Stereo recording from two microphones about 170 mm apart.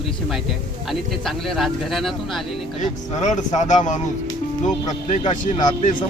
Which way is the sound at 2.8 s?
45° left (ahead or behind).